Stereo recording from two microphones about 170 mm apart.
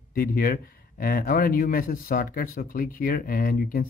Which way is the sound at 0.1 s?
60° left (ahead or behind).